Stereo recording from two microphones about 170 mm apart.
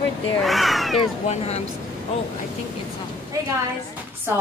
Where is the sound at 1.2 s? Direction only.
40° left (ahead or behind).